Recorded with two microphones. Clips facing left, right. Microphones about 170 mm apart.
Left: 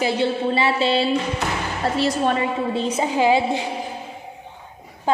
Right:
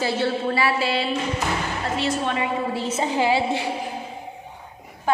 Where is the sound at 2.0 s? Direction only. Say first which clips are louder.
Left 4 dB; 40° left (ahead or behind).